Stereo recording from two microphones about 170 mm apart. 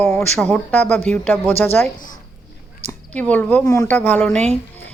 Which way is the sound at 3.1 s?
10° left (ahead or behind).